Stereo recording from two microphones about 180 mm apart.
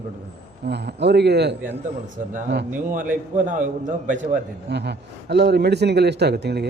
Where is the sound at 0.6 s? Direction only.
65° right (ahead or behind).